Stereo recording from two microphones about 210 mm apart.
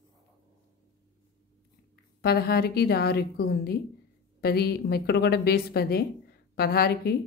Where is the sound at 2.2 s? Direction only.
50° left (ahead or behind).